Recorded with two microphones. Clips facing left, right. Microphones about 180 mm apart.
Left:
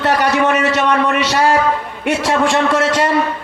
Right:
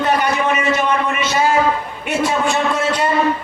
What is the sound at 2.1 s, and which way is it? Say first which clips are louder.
A man's voice: left 3 dB; 90° left.